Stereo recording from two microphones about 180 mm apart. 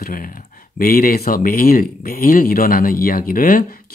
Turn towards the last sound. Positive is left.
turn(degrees=50)  # may be behind; listen again after turning